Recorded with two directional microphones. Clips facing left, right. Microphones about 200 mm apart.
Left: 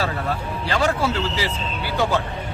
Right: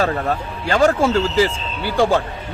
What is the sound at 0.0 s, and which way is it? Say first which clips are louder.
Speech: right 5 dB; 45° right (ahead or behind).